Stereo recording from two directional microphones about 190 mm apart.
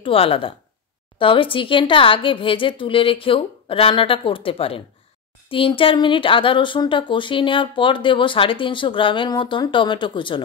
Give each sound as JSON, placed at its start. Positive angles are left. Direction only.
{"t": 0.0, "sound": "speech", "side_deg": 30}